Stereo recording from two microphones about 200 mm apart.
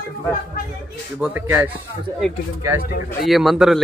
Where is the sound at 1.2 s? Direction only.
10° right (ahead or behind).